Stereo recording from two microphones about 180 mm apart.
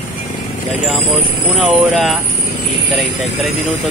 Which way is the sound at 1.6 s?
Centre (ahead or behind).